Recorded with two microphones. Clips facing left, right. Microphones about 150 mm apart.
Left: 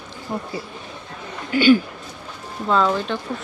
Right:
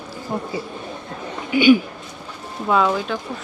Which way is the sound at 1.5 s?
15° right (ahead or behind).